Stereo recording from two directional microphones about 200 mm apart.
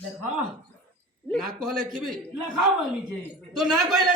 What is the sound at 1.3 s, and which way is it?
A woman's voice, centre (ahead or behind).